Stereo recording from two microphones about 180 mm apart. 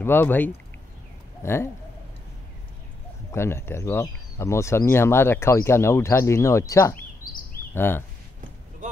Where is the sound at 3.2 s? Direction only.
15° left (ahead or behind).